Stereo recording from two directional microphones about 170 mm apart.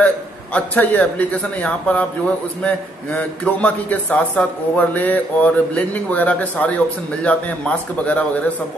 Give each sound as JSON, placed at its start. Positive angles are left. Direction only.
{"t": 0.0, "sound": "a man's voice", "side_deg": 10}